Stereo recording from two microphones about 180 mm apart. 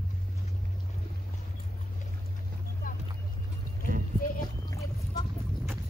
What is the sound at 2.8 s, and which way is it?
Vehicle, 50° left (ahead or behind).